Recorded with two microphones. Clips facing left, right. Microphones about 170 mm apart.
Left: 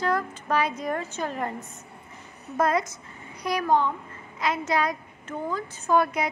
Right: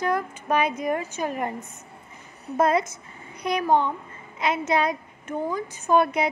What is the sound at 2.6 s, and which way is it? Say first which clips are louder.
A child's voice: right 3 dB; 25° right (ahead or behind).